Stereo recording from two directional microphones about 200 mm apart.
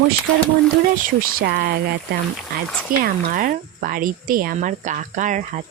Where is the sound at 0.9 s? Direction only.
45° right (ahead or behind).